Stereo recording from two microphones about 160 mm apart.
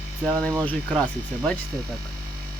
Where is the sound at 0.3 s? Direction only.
5° left (ahead or behind).